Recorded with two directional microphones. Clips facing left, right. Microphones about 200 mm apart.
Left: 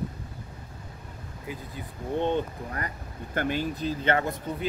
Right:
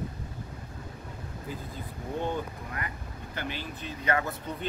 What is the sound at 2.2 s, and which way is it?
Speech, 25° left (ahead or behind).